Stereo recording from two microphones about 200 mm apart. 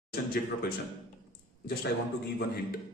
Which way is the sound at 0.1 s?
50° left (ahead or behind).